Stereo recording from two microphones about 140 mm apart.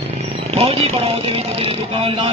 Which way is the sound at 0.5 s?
45° right (ahead or behind).